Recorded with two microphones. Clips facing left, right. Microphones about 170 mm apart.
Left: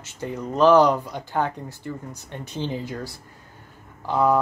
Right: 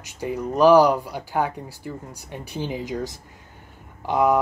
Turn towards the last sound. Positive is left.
turn(degrees=-15)  # may be behind; listen again after turning